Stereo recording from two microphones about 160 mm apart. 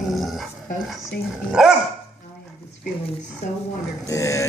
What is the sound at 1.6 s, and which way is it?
Speech, 5° right (ahead or behind).